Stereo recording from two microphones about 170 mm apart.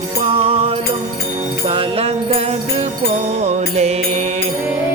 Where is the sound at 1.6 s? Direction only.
35° right (ahead or behind).